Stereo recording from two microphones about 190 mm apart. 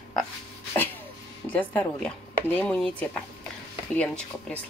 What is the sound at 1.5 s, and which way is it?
Speech, 10° left (ahead or behind).